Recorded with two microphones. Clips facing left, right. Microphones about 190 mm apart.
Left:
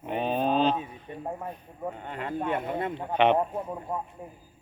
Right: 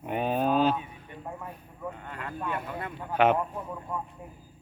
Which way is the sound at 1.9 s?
25° left (ahead or behind).